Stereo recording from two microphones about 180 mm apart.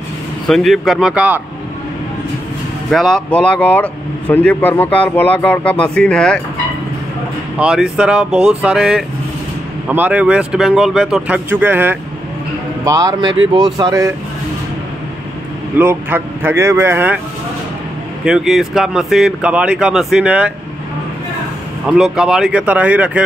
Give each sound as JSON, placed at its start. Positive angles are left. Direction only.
{"t": 0.5, "sound": "speech", "side_deg": 0}
{"t": 2.9, "sound": "speech", "side_deg": 0}
{"t": 7.5, "sound": "speech", "side_deg": -5}
{"t": 15.8, "sound": "speech", "side_deg": -10}
{"t": 18.2, "sound": "speech", "side_deg": 0}
{"t": 21.8, "sound": "speech", "side_deg": -5}